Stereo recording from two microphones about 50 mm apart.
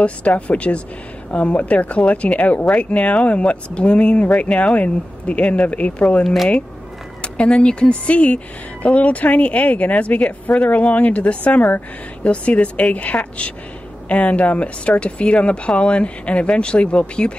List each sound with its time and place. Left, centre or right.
0.0 s a woman's voice: left
6.2 s speech: centre
7.2 s a woman's voice: left